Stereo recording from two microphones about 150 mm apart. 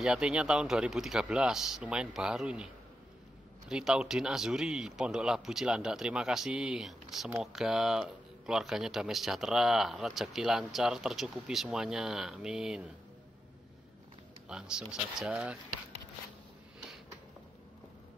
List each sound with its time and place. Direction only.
0.0 s speech: 5° right (ahead or behind)
14.5 s speech: 5° right (ahead or behind)